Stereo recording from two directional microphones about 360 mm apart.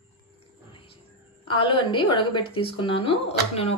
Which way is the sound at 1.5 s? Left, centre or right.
Centre.